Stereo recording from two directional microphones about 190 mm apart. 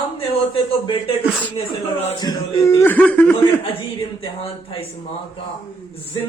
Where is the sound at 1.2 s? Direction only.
5° right (ahead or behind).